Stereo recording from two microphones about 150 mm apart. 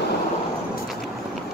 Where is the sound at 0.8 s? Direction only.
Centre (ahead or behind).